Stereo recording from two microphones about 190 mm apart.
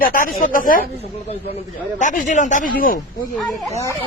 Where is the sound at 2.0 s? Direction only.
40° left (ahead or behind).